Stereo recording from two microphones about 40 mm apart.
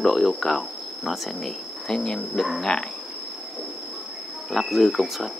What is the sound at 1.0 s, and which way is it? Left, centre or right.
Speech, centre.